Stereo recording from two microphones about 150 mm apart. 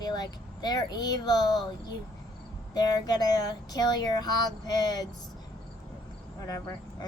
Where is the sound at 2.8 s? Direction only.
25° left (ahead or behind).